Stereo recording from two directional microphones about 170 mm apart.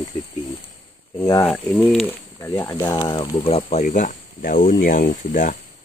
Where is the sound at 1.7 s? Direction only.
Centre (ahead or behind).